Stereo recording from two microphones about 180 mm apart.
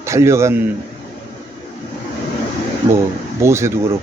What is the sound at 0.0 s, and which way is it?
Speech, 15° right (ahead or behind).